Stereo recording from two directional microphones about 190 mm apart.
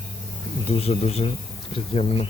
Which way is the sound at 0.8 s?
35° left (ahead or behind).